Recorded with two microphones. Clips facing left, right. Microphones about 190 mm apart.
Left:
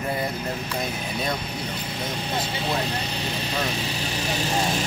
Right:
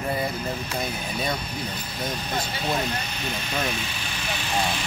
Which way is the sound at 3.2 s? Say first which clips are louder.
Left 1 dB; 30° left (ahead or behind).